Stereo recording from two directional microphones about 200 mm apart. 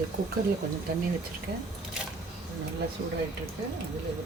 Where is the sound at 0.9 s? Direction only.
50° right (ahead or behind).